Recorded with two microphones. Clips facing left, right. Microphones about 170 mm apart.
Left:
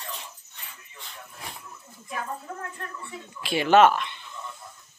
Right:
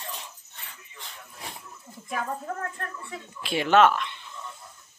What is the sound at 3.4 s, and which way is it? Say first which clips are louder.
Speech: left 2 dB; centre (ahead or behind).